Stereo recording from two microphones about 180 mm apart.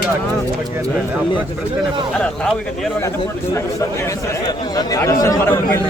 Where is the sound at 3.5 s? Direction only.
15° left (ahead or behind).